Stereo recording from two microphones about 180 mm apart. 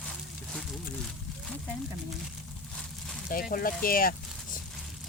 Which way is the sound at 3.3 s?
55° left (ahead or behind).